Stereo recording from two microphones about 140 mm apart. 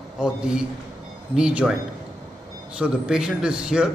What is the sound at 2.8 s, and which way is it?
A man's voice, 5° right (ahead or behind).